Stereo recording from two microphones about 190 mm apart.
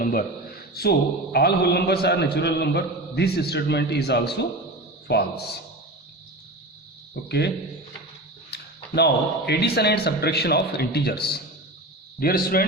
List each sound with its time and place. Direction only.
0.0 s a sound: 50° left (ahead or behind)
0.7 s a man's voice: 55° left (ahead or behind)
7.3 s a man's voice: 60° left (ahead or behind)
8.5 s a sound: 60° left (ahead or behind)
9.5 s a man's voice: 60° left (ahead or behind)
12.2 s speech: 50° left (ahead or behind)